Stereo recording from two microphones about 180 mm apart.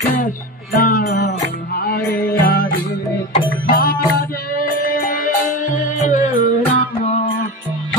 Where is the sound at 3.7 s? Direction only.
55° left (ahead or behind).